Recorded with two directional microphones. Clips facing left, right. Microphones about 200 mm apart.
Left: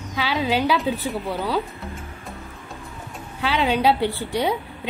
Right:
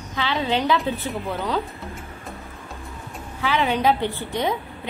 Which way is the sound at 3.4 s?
15° left (ahead or behind).